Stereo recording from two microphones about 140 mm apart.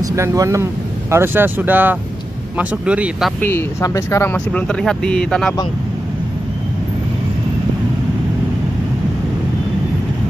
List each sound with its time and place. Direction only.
0.0 s speech: 20° right (ahead or behind); by 3.3 s 5° right (ahead or behind)
3.3 s speech: 15° left (ahead or behind)